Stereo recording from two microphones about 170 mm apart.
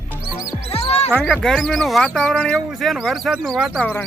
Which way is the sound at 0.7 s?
35° left (ahead or behind).